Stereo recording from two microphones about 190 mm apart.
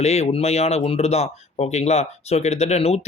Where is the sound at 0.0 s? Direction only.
35° left (ahead or behind).